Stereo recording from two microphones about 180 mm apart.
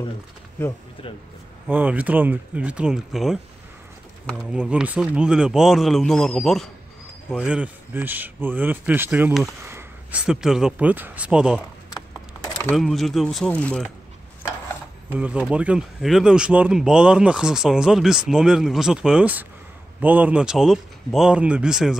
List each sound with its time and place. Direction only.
1.7 s speech: 10° right (ahead or behind)
4.4 s speech: 5° right (ahead or behind)
9.6 s a sound: 15° right (ahead or behind)
10.2 s speech: 5° right (ahead or behind)
11.9 s a sound: 20° left (ahead or behind)
12.7 s speech: centre (ahead or behind)
15.0 s speech: 5° right (ahead or behind)